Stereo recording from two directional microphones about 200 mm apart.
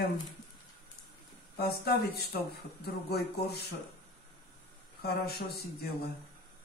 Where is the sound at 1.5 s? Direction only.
50° left (ahead or behind).